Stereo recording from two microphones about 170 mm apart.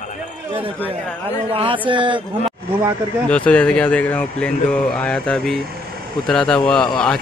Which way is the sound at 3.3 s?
5° left (ahead or behind).